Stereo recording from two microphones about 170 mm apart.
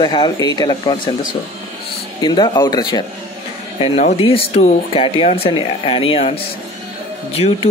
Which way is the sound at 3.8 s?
35° left (ahead or behind).